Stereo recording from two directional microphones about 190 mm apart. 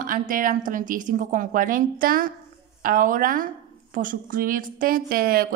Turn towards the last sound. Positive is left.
turn(degrees=-50)  # may be behind; listen again after turning